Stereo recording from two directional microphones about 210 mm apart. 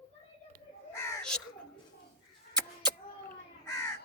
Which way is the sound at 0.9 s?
10° left (ahead or behind).